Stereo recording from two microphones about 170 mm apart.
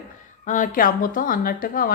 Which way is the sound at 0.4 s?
50° left (ahead or behind).